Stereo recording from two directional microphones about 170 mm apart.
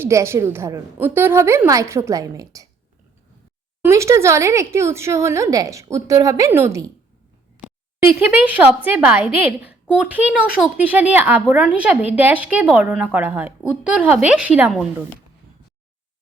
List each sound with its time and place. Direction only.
0.0 s a woman's voice: 15° right (ahead or behind)
3.8 s a woman's voice: 15° right (ahead or behind)